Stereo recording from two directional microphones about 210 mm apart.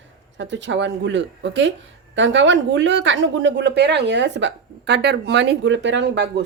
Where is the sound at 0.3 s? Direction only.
60° right (ahead or behind).